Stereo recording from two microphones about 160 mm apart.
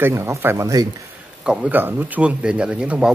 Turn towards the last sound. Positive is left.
turn(degrees=-5)  # may be behind; listen again after turning